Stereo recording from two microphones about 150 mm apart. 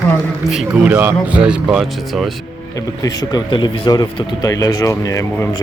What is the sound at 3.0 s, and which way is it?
Speech, 30° left (ahead or behind).